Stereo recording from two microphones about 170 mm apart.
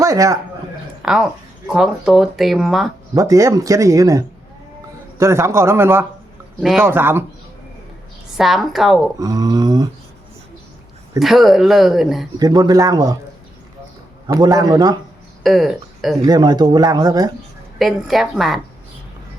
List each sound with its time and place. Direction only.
0.0 s a man's voice: 20° right (ahead or behind)
1.0 s speech: 5° right (ahead or behind)
3.2 s speech: 20° right (ahead or behind)
6.6 s speech: centre (ahead or behind)
6.8 s speech: 15° right (ahead or behind)
8.4 s speech: centre (ahead or behind)
9.1 s speech: 20° right (ahead or behind)
11.2 s speech: centre (ahead or behind)
12.4 s speech: 25° right (ahead or behind)
14.3 s speech: 20° right (ahead or behind)
15.4 s speech: centre (ahead or behind)
16.2 s speech: 25° right (ahead or behind)
17.7 s speech: centre (ahead or behind)